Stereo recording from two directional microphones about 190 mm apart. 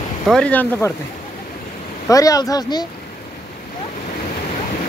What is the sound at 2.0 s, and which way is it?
Speech, 20° left (ahead or behind).